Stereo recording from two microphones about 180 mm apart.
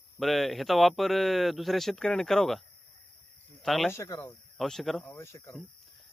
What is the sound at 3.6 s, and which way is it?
Speech, centre (ahead or behind).